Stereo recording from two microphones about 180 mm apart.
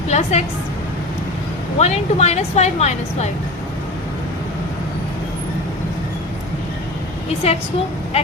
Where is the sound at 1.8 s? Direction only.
35° left (ahead or behind).